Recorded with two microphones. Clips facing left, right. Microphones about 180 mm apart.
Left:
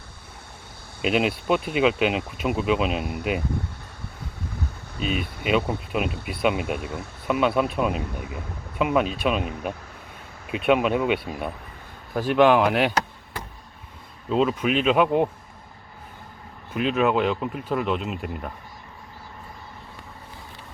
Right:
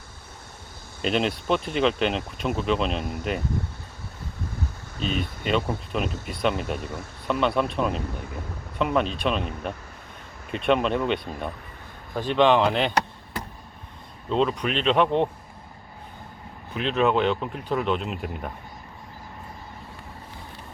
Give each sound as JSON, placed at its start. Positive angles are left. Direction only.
{"t": 1.0, "sound": "speech", "side_deg": 5}
{"t": 4.9, "sound": "speech", "side_deg": 5}
{"t": 14.3, "sound": "speech", "side_deg": 5}
{"t": 16.7, "sound": "speech", "side_deg": 5}